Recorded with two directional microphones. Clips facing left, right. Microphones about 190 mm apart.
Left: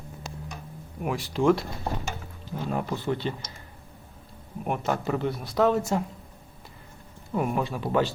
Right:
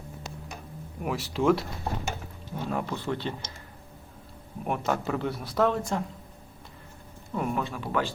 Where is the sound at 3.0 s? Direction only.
Centre (ahead or behind).